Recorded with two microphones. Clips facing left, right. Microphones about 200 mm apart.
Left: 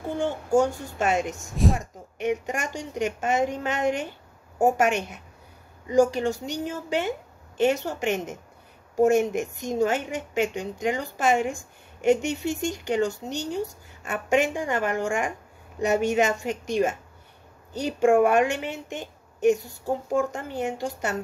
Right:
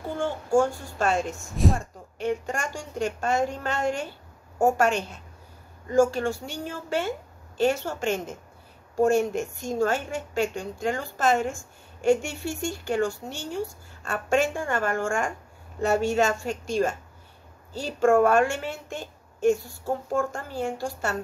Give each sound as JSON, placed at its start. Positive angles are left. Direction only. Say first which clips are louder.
{"t": 0.0, "sound": "a child's voice", "louder": "left 2 dB", "side_deg": 20}